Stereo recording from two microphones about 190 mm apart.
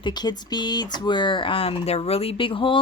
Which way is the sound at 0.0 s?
20° left (ahead or behind).